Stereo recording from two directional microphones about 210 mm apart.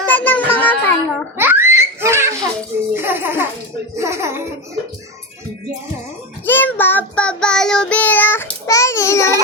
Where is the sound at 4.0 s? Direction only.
15° right (ahead or behind).